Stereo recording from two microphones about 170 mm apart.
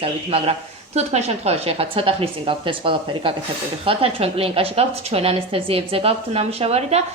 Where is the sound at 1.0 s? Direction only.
40° right (ahead or behind).